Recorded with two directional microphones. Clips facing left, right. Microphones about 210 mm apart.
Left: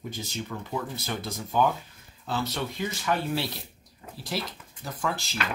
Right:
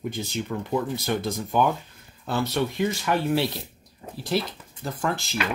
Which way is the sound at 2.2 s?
60° right (ahead or behind).